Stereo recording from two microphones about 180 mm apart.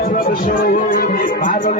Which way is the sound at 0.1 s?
50° left (ahead or behind).